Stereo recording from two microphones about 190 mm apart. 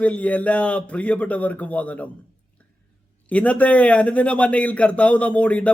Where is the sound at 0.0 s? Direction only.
5° left (ahead or behind).